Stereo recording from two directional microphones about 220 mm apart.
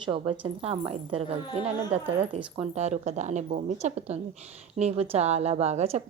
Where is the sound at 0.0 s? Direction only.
25° right (ahead or behind).